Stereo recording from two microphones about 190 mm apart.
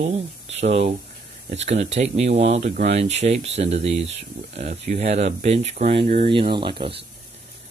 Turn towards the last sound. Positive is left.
turn(degrees=-25)  # may be behind; listen again after turning